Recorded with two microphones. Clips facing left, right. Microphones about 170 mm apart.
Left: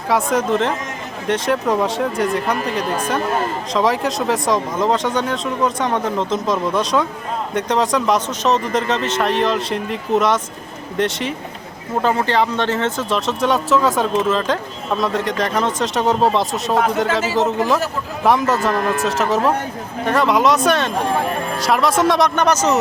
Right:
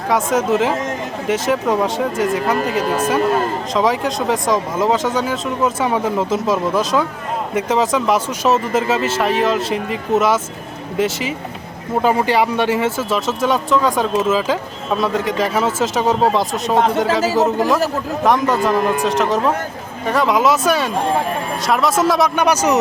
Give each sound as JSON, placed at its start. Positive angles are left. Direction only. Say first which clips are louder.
{"t": 0.1, "sound": "speech", "louder": "right 1 dB", "side_deg": 0}
{"t": 16.7, "sound": "speech", "louder": "right 2 dB", "side_deg": -30}
{"t": 17.0, "sound": "speech", "louder": "right 2 dB", "side_deg": 0}